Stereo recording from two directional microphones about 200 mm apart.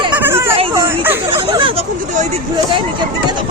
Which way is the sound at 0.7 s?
10° right (ahead or behind).